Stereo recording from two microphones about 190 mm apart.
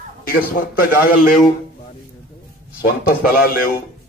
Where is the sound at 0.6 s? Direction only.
50° left (ahead or behind).